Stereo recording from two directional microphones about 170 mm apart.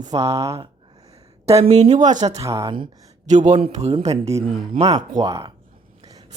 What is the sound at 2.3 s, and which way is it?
Speech, 20° right (ahead or behind).